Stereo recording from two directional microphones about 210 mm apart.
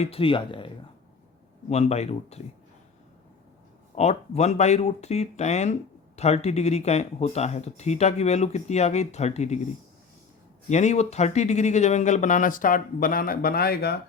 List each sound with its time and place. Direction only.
0.0 s speech: 25° left (ahead or behind)
1.7 s speech: 30° left (ahead or behind)
3.9 s speech: 30° left (ahead or behind)
10.7 s speech: 35° left (ahead or behind); by 14.0 s 50° left (ahead or behind)